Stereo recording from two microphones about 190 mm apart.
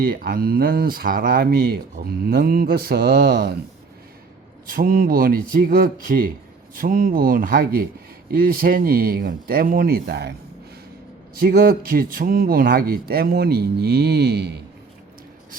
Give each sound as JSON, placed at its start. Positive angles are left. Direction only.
{"t": 0.0, "sound": "speech", "side_deg": -50}
{"t": 4.6, "sound": "speech", "side_deg": -50}
{"t": 11.3, "sound": "speech", "side_deg": -50}